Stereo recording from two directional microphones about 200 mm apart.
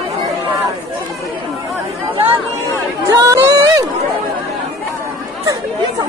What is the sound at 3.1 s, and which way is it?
Chatter, 15° right (ahead or behind).